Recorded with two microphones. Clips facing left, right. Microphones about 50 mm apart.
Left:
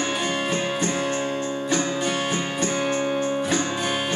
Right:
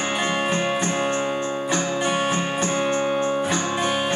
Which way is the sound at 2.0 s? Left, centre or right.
Right.